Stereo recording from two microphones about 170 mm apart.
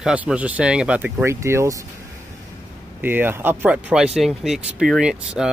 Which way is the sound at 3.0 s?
10° right (ahead or behind).